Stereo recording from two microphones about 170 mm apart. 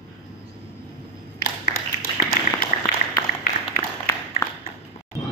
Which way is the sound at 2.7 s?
50° left (ahead or behind).